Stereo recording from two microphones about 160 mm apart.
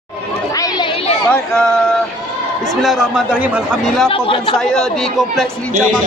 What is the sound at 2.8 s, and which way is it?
Speech, 5° right (ahead or behind).